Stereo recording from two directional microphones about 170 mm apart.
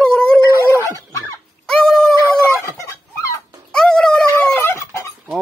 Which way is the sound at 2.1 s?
15° left (ahead or behind).